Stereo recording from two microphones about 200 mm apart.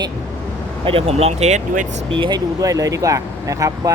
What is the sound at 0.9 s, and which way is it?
Speech, 30° right (ahead or behind).